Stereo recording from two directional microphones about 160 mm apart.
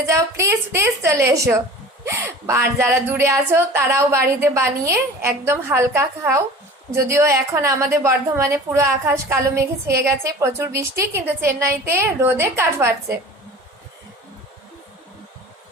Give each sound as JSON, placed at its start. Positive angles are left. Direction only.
{"t": 0.1, "sound": "a woman's voice", "side_deg": -20}